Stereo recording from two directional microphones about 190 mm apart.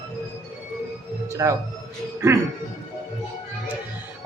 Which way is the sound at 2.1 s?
15° right (ahead or behind).